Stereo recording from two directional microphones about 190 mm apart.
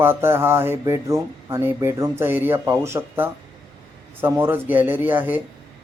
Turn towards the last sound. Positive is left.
turn(degrees=-10)  # may be behind; listen again after turning